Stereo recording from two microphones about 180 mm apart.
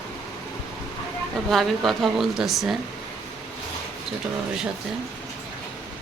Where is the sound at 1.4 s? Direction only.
Centre (ahead or behind).